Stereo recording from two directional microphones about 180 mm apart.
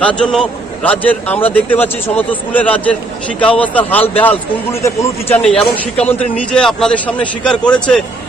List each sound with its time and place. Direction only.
0.0 s a man's voice: 5° left (ahead or behind)